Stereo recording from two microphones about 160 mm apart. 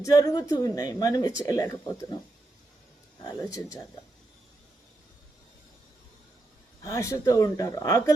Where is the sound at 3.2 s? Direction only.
25° left (ahead or behind).